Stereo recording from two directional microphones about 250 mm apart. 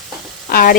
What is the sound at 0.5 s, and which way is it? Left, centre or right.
Speech, left.